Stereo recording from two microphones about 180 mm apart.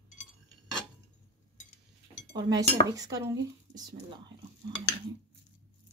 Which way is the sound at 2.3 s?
20° right (ahead or behind).